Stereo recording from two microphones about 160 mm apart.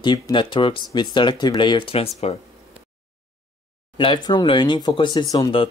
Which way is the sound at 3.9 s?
30° left (ahead or behind).